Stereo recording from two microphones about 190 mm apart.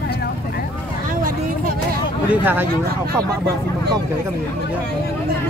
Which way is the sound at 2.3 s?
10° right (ahead or behind).